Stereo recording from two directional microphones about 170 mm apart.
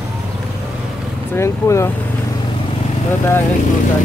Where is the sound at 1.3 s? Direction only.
15° left (ahead or behind).